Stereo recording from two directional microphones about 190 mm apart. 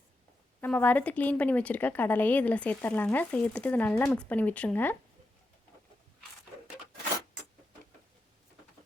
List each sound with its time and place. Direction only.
0.6 s a woman's voice: 10° left (ahead or behind)